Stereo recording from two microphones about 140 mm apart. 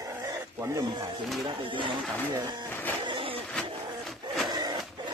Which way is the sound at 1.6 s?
35° right (ahead or behind).